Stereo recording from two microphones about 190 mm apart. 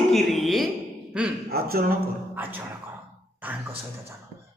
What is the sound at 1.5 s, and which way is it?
Speech, 50° right (ahead or behind).